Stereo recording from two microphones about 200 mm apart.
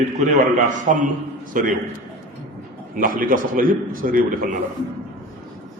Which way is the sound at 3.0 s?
45° right (ahead or behind).